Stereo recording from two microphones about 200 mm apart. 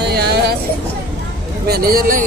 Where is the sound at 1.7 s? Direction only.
45° right (ahead or behind).